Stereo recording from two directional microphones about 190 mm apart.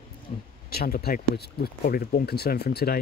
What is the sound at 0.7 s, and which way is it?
Speech, 55° left (ahead or behind).